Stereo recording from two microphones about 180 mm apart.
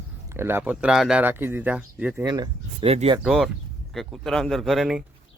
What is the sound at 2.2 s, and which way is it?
Speech, 20° right (ahead or behind).